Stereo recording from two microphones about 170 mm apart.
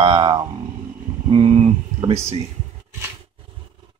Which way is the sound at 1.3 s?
35° right (ahead or behind).